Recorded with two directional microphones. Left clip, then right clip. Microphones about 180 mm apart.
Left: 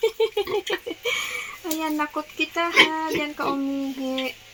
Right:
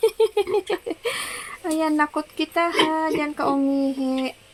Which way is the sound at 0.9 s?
25° right (ahead or behind).